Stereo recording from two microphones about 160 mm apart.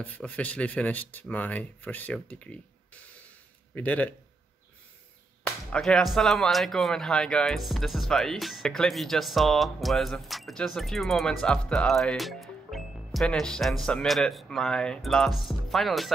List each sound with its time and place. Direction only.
0.0 s speech: 10° left (ahead or behind)
5.4 s speech: 5° left (ahead or behind)